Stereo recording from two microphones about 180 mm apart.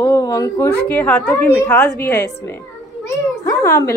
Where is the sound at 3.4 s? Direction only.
15° left (ahead or behind).